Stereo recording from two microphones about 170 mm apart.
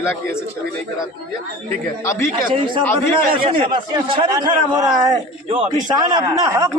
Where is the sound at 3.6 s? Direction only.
30° right (ahead or behind).